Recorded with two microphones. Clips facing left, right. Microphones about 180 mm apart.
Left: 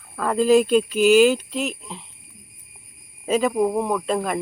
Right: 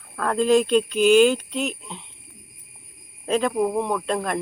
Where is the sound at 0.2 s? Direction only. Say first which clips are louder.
Left 2 dB; 5° left (ahead or behind).